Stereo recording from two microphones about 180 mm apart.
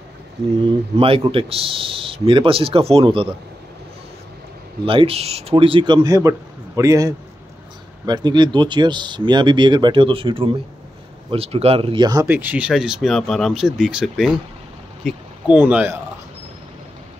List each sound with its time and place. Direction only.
0.9 s speech: 30° right (ahead or behind)
4.8 s speech: 30° right (ahead or behind); by 16.0 s 10° right (ahead or behind)